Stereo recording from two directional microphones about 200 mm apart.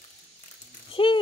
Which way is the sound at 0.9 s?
25° left (ahead or behind).